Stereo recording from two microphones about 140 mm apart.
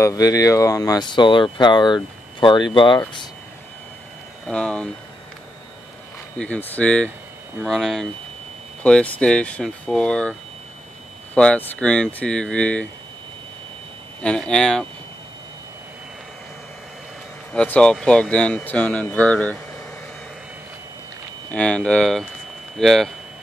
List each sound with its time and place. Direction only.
0.0 s speech: 25° left (ahead or behind)
4.5 s speech: 10° left (ahead or behind)
6.3 s speech: 10° left (ahead or behind)
11.3 s speech: 10° left (ahead or behind)
14.2 s speech: 5° left (ahead or behind)
17.5 s speech: 5° left (ahead or behind)
21.5 s speech: 10° left (ahead or behind)